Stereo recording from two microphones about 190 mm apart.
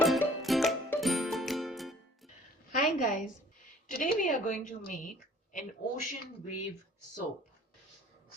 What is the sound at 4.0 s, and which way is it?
Speech, 45° left (ahead or behind).